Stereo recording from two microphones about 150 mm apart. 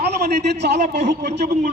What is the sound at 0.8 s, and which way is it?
Speech, 50° right (ahead or behind).